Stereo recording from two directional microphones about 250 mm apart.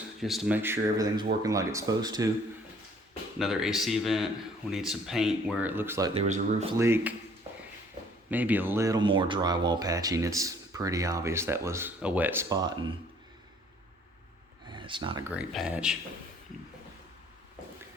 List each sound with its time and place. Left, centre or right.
0.2 s speech: centre
3.3 s speech: centre
6.2 s speech: right
6.7 s speech: centre
8.3 s speech: centre
14.7 s speech: centre